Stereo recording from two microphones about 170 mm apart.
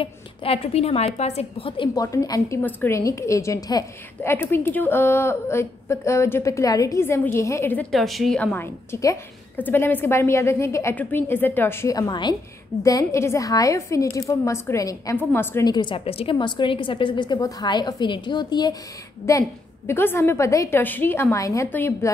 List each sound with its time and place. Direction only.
0.0 s a woman's voice: 35° left (ahead or behind)
2.0 s a woman's voice: 20° left (ahead or behind)
7.9 s a woman's voice: centre (ahead or behind)
15.7 s a woman's voice: 30° left (ahead or behind)
19.9 s a woman's voice: 15° left (ahead or behind)